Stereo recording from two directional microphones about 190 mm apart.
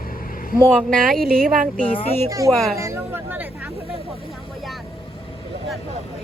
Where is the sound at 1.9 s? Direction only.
30° left (ahead or behind).